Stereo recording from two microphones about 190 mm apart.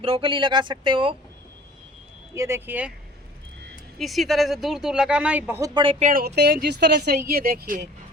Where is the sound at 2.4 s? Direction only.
15° right (ahead or behind).